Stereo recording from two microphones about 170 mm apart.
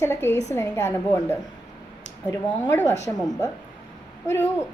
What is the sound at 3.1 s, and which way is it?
Speech, centre (ahead or behind).